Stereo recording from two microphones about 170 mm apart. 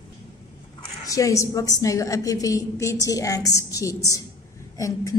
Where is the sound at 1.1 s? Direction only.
20° left (ahead or behind).